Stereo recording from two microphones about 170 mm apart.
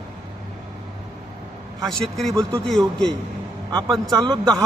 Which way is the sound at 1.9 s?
Centre (ahead or behind).